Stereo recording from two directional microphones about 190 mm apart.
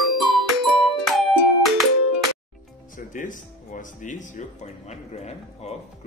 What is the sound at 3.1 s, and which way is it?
Music, 45° left (ahead or behind).